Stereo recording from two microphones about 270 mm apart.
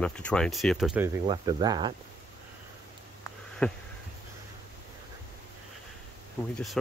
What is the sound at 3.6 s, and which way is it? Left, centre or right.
Speech, centre.